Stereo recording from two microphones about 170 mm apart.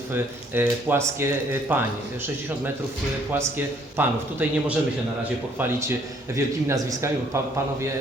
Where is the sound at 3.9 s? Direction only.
10° right (ahead or behind).